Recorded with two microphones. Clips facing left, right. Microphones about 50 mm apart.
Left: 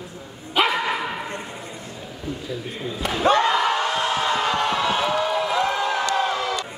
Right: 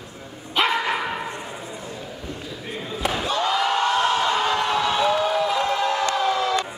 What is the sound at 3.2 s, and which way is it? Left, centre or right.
Slam, left.